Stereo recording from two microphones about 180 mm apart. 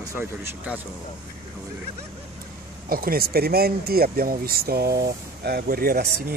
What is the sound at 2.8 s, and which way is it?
Speech, 55° right (ahead or behind).